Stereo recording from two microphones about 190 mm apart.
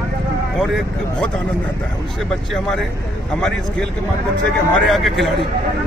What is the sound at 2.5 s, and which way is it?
Speech, centre (ahead or behind).